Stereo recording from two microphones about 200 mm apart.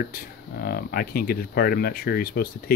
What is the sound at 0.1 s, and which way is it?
Speech, 50° left (ahead or behind).